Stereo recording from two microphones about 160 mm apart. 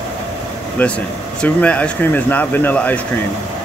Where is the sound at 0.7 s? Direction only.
10° left (ahead or behind).